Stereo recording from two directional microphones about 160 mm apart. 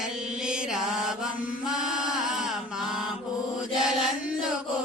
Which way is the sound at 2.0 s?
5° right (ahead or behind).